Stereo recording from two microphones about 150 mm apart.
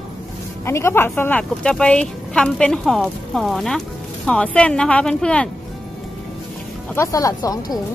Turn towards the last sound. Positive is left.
turn(degrees=25)  # may be behind; listen again after turning